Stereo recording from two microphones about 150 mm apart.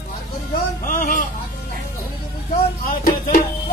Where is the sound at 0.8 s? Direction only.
65° left (ahead or behind).